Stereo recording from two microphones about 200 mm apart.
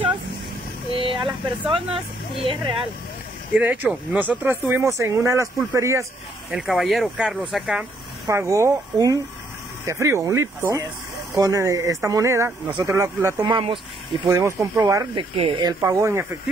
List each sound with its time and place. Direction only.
0.9 s speech: 25° right (ahead or behind)
3.5 s speech: 10° right (ahead or behind)
6.5 s speech: centre (ahead or behind)
8.3 s speech: 15° right (ahead or behind)
15.3 s speech: 25° right (ahead or behind)
15.8 s speech: 15° right (ahead or behind)